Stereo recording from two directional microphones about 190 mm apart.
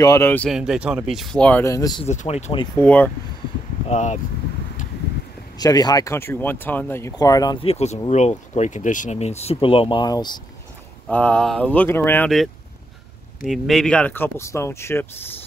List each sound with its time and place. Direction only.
0.0 s speech: 15° left (ahead or behind)
0.5 s speech: 5° right (ahead or behind); by 2.0 s 20° left (ahead or behind)
2.0 s speech: 35° left (ahead or behind)
2.8 s speech: 10° left (ahead or behind)
3.8 s speech: 40° left (ahead or behind)
5.6 s speech: 20° left (ahead or behind)
11.1 s speech: 5° left (ahead or behind)
13.5 s speech: centre (ahead or behind)